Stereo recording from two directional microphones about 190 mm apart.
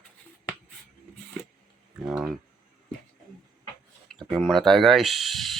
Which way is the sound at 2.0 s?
5° right (ahead or behind).